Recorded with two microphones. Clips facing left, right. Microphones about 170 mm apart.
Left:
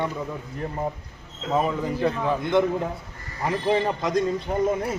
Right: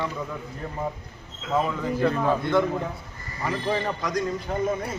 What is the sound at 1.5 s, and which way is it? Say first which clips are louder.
A man's voice: left 1 dB; 15° left (ahead or behind).